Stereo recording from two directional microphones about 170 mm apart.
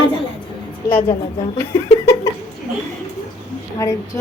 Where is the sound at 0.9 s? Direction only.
30° left (ahead or behind).